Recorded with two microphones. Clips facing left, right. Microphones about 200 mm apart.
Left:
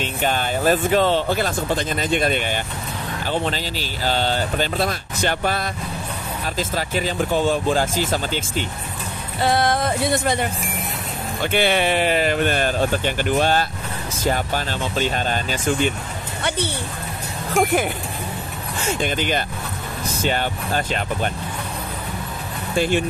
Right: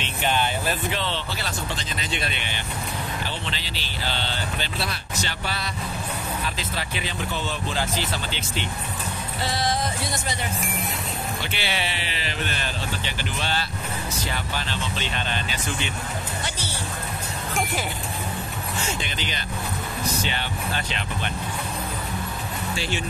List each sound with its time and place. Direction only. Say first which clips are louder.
0.0 s speech: left 2 dB; 45° left (ahead or behind)
9.4 s speech: left 7 dB; 55° left (ahead or behind)
11.4 s speech: left 15 dB; 50° left (ahead or behind)
16.4 s speech: left 9 dB; 60° left (ahead or behind)
18.9 s speech: left 8 dB; 50° left (ahead or behind)
22.8 s speech: left 12 dB; 50° left (ahead or behind)